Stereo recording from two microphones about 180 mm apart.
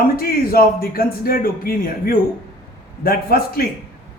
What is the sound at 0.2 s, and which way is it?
A man's voice, 55° left (ahead or behind).